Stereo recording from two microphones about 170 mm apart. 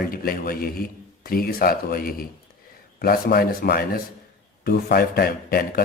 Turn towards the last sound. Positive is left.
turn(degrees=60)  # may be behind; listen again after turning